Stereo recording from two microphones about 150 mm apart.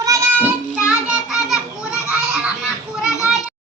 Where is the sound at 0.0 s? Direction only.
20° right (ahead or behind).